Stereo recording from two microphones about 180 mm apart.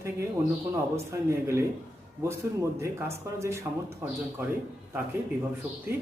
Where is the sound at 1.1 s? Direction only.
15° right (ahead or behind).